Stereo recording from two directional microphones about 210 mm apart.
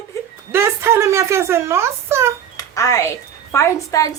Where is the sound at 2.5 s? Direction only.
15° left (ahead or behind).